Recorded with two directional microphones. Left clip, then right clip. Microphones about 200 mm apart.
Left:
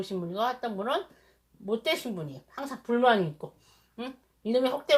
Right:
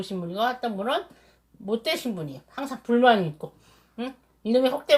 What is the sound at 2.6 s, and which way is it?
Speech, 20° left (ahead or behind).